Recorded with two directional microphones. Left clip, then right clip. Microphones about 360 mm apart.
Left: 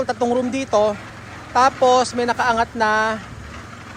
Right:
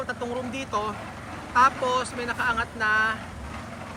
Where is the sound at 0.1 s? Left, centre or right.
Centre.